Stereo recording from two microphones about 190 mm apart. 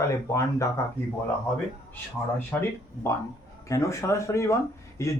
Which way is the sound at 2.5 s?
15° left (ahead or behind).